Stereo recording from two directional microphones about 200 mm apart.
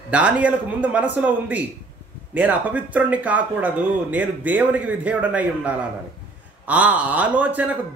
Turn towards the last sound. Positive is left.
turn(degrees=-10)  # may be behind; listen again after turning